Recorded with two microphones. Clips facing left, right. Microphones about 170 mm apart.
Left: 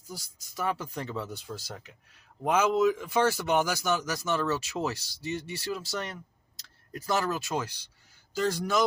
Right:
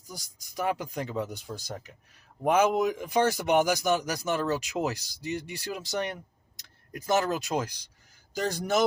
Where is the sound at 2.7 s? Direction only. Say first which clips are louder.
Left 1 dB; 15° right (ahead or behind).